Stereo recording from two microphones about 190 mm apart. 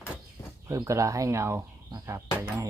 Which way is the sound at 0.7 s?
15° right (ahead or behind).